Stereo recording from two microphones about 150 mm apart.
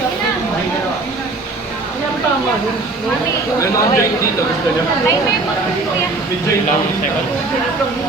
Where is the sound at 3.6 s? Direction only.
20° left (ahead or behind).